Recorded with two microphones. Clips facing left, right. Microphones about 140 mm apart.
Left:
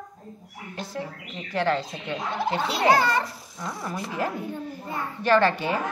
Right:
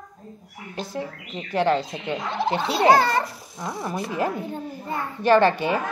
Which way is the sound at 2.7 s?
35° right (ahead or behind).